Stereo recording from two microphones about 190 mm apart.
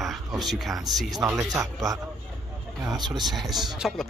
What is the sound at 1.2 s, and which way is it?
Speech, 15° right (ahead or behind).